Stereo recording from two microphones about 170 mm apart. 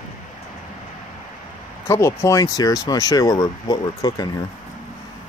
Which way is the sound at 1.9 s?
15° left (ahead or behind).